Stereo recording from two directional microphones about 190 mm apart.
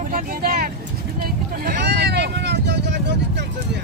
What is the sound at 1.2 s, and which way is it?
Vehicle, 55° right (ahead or behind).